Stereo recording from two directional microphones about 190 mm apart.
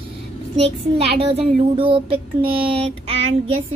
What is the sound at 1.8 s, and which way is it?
Speech, 30° right (ahead or behind).